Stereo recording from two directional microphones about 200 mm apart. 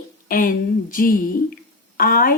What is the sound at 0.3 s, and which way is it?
Speech, 45° left (ahead or behind).